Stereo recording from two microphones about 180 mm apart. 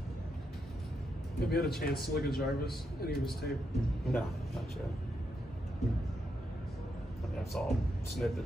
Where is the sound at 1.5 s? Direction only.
60° left (ahead or behind).